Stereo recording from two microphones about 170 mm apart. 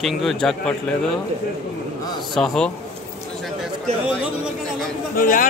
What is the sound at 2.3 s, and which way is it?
Speech, 5° left (ahead or behind).